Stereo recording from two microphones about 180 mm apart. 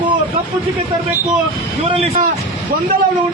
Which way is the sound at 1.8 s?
35° right (ahead or behind).